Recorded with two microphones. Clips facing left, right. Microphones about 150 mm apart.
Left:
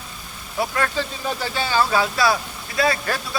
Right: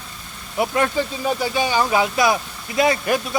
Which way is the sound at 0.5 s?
20° right (ahead or behind).